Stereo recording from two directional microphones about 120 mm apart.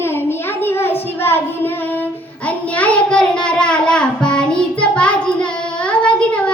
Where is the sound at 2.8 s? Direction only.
10° left (ahead or behind).